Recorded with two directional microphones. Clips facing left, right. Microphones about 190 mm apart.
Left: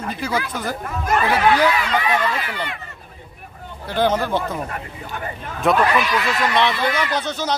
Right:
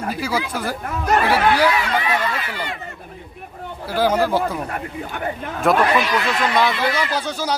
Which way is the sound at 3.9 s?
10° right (ahead or behind).